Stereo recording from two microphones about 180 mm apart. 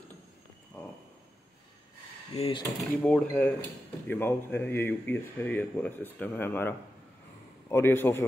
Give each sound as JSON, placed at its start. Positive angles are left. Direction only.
{"t": 2.3, "sound": "speech", "side_deg": 30}
{"t": 2.6, "sound": "speech", "side_deg": 5}
{"t": 7.7, "sound": "speech", "side_deg": 10}